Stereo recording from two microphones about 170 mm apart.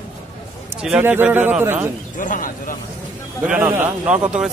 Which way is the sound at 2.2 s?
50° left (ahead or behind).